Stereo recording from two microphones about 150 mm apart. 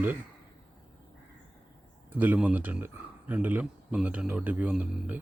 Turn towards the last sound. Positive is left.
turn(degrees=-5)  # may be behind; listen again after turning